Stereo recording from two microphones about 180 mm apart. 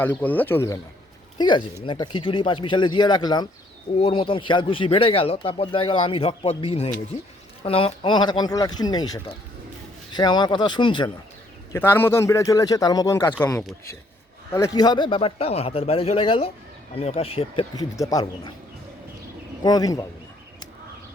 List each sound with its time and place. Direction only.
0.0 s a man's voice: 10° left (ahead or behind)
1.4 s speech: 25° left (ahead or behind)
11.7 s a man's voice: 15° left (ahead or behind); by 17.7 s 30° left (ahead or behind)
17.7 s speech: 20° left (ahead or behind)
19.6 s speech: 20° left (ahead or behind)